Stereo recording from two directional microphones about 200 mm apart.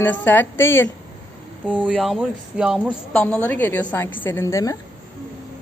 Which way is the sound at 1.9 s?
Centre (ahead or behind).